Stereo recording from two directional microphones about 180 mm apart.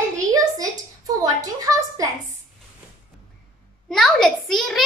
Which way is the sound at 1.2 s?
20° right (ahead or behind).